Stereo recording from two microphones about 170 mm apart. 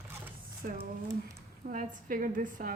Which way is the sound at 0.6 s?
55° right (ahead or behind).